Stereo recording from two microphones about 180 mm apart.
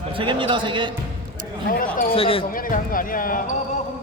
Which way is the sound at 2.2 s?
30° left (ahead or behind).